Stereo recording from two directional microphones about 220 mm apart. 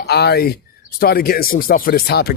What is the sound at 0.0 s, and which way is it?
Speech, 50° left (ahead or behind).